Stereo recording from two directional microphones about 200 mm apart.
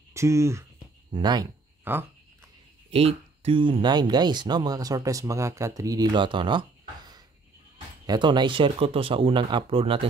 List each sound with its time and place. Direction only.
0.1 s speech: 15° right (ahead or behind)
2.9 s speech: 30° right (ahead or behind)
8.1 s speech: 20° right (ahead or behind)